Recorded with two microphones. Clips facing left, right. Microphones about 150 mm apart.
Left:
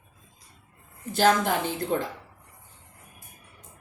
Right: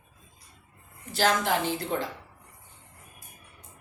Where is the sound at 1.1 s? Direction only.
50° left (ahead or behind).